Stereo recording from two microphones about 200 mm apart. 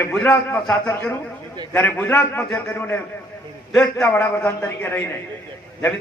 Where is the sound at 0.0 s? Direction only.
5° left (ahead or behind).